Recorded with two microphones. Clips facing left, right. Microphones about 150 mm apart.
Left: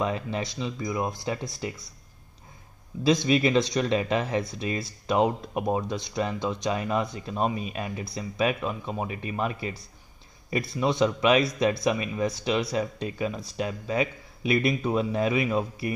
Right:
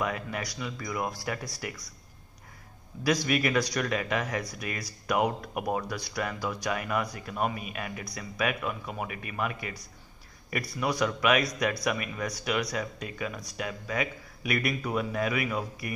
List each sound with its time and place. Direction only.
0.0 s speech: 25° left (ahead or behind)
3.0 s speech: 25° left (ahead or behind)